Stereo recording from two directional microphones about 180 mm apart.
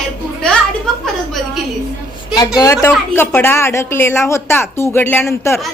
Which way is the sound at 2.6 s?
15° left (ahead or behind).